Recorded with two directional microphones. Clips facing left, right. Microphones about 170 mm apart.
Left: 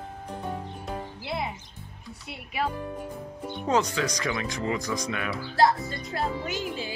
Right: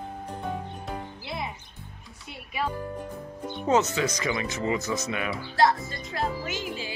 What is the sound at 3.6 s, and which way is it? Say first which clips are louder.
Speech: right 2 dB; 5° right (ahead or behind).